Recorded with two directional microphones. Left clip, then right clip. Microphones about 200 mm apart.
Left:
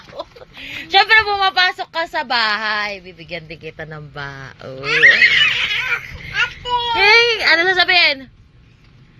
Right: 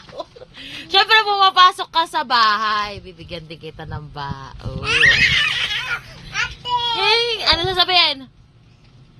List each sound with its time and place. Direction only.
0.2 s speech: centre (ahead or behind)
4.8 s speech: 30° right (ahead or behind)
5.1 s a sound: 15° right (ahead or behind)
6.9 s speech: 5° left (ahead or behind)